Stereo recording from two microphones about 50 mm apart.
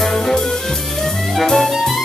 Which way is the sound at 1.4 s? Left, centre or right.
Centre.